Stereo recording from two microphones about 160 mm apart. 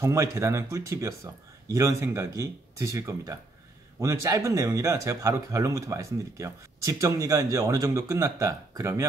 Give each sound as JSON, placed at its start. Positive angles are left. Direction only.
{"t": 0.0, "sound": "speech", "side_deg": -15}